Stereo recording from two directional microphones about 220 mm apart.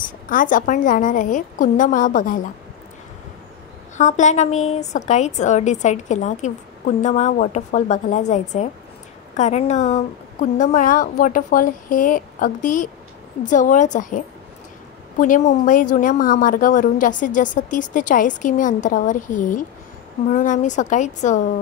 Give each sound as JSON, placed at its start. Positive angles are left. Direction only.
{"t": 0.3, "sound": "a woman's voice", "side_deg": 40}
{"t": 3.9, "sound": "a woman's voice", "side_deg": 35}